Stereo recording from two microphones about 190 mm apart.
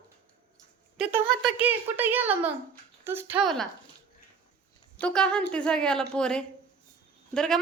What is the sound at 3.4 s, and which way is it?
Speech, centre (ahead or behind).